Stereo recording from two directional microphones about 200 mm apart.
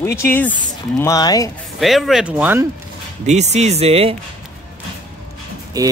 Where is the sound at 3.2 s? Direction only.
35° right (ahead or behind).